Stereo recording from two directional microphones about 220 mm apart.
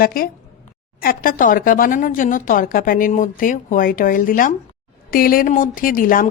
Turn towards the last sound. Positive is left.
turn(degrees=40)  # may be behind; listen again after turning